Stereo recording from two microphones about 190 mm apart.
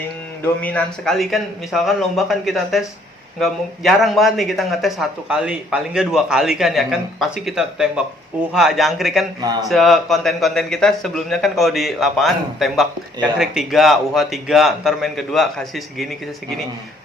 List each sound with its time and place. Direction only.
0.4 s a man's voice: 5° left (ahead or behind)
9.4 s speech: 20° right (ahead or behind)
9.6 s a man's voice: centre (ahead or behind)